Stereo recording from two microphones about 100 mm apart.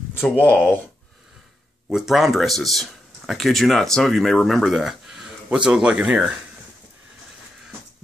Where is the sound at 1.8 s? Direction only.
5° right (ahead or behind).